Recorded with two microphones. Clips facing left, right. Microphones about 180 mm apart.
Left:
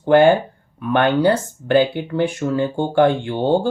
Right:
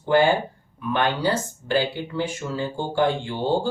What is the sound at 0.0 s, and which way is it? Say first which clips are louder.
Speech: left 6 dB; 60° left (ahead or behind).